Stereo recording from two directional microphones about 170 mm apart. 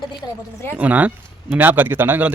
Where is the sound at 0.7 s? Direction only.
10° right (ahead or behind).